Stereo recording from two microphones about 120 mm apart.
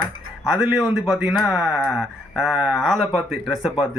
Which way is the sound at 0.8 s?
5° right (ahead or behind).